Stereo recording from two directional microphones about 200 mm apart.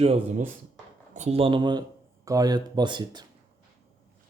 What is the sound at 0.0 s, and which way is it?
Speech, 35° right (ahead or behind).